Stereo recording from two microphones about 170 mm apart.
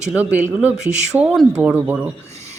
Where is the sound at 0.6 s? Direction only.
5° right (ahead or behind).